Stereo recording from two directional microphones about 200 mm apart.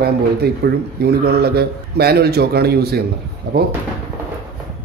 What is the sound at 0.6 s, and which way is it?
A man's voice, 55° right (ahead or behind).